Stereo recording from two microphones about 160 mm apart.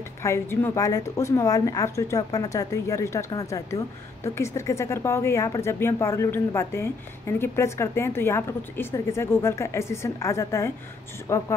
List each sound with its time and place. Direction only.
0.2 s a woman's voice: 15° left (ahead or behind)